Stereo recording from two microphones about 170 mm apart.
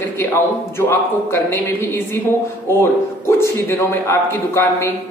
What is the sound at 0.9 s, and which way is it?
A man's voice, 15° left (ahead or behind).